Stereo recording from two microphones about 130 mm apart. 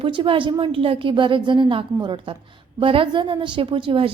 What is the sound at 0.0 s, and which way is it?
A woman's voice, 40° right (ahead or behind).